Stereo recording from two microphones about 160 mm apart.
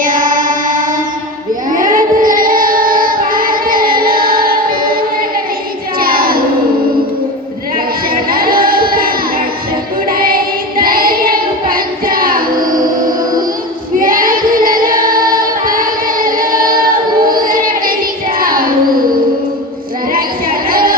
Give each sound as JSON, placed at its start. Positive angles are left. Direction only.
{"t": 0.0, "sound": "music", "side_deg": -55}
{"t": 1.7, "sound": "child singing", "side_deg": -55}
{"t": 8.1, "sound": "a sound", "side_deg": -65}
{"t": 10.1, "sound": "child singing", "side_deg": -65}
{"t": 14.0, "sound": "singing", "side_deg": -60}
{"t": 18.3, "sound": "child singing", "side_deg": -65}
{"t": 20.7, "sound": "music", "side_deg": -65}